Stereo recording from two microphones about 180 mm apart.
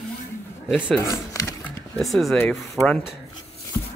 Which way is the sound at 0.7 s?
5° right (ahead or behind).